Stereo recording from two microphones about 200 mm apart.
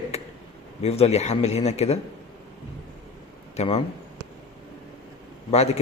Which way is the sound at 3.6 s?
30° left (ahead or behind).